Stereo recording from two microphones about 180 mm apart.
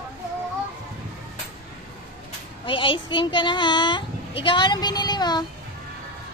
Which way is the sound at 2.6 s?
30° left (ahead or behind).